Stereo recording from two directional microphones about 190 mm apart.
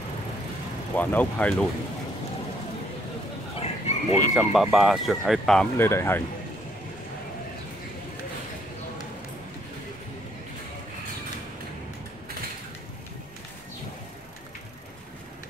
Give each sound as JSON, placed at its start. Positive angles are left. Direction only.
{"t": 0.9, "sound": "speech", "side_deg": 5}
{"t": 3.5, "sound": "chicken", "side_deg": 30}
{"t": 4.4, "sound": "speech", "side_deg": -5}